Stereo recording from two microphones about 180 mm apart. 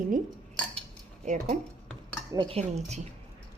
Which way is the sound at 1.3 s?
40° right (ahead or behind).